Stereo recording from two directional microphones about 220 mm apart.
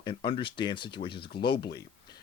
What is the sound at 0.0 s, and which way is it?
Speech, 20° left (ahead or behind).